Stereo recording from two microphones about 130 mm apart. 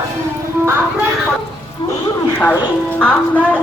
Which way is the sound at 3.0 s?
10° left (ahead or behind).